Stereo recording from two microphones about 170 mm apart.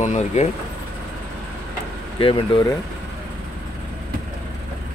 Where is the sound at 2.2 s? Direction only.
30° left (ahead or behind).